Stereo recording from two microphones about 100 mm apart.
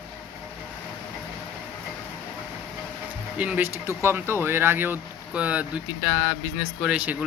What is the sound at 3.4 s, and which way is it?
Speech, 15° right (ahead or behind).